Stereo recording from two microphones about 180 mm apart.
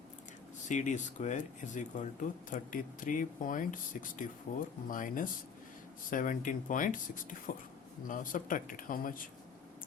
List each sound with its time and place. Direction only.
0.7 s speech: 45° left (ahead or behind)